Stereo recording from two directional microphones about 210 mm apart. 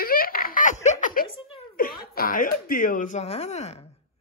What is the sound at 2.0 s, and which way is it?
Speech, 45° left (ahead or behind).